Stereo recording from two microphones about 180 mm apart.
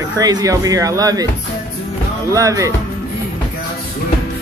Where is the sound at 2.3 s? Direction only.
20° right (ahead or behind).